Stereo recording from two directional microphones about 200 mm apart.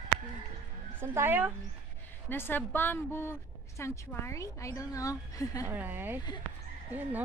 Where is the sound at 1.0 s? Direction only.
10° right (ahead or behind).